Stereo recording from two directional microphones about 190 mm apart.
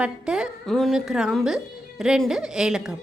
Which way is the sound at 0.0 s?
5° right (ahead or behind).